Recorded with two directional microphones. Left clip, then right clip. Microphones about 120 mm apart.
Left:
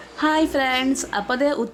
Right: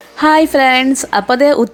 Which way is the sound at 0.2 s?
45° right (ahead or behind).